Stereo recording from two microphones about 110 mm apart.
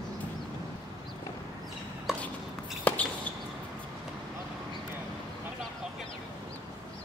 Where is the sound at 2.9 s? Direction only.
15° left (ahead or behind).